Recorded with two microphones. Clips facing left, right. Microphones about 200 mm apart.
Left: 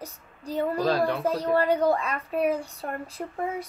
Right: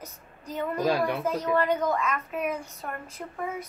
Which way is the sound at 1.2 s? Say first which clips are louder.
Left 2 dB; 35° left (ahead or behind).